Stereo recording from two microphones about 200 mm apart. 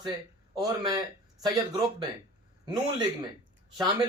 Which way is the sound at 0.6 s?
20° right (ahead or behind).